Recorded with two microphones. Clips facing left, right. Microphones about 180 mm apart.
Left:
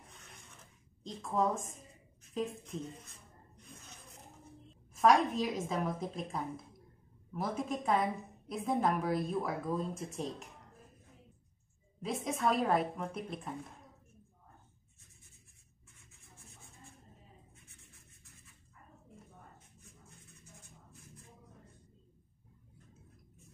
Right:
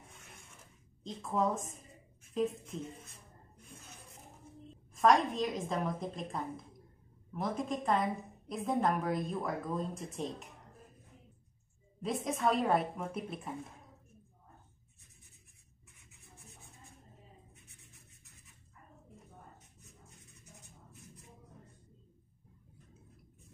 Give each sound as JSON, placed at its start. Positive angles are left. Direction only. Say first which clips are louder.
{"t": 1.0, "sound": "speech", "louder": "even", "side_deg": 0}
{"t": 4.9, "sound": "speech", "louder": "even", "side_deg": 5}
{"t": 12.0, "sound": "speech", "louder": "right 1 dB", "side_deg": 0}
{"t": 20.6, "sound": "a sound", "louder": "right 2 dB", "side_deg": -15}